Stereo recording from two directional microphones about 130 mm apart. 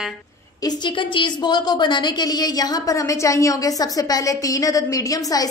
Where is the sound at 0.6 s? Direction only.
40° left (ahead or behind).